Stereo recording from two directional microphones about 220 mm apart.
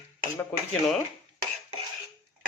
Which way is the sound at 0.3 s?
5° left (ahead or behind).